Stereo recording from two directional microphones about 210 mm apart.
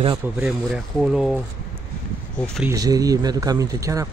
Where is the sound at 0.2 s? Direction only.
10° right (ahead or behind).